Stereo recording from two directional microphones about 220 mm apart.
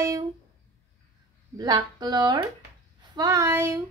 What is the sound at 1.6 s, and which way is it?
Speech, 15° right (ahead or behind).